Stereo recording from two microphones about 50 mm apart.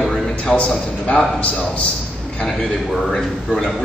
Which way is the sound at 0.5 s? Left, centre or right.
Left.